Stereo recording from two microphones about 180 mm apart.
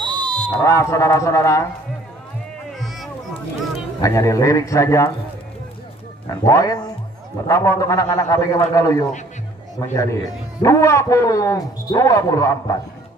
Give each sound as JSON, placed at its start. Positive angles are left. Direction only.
{"t": 0.0, "sound": "fire alarm", "side_deg": -25}
{"t": 0.7, "sound": "a man's voice", "side_deg": 15}
{"t": 4.0, "sound": "a man's voice", "side_deg": 20}
{"t": 6.3, "sound": "a man's voice", "side_deg": 20}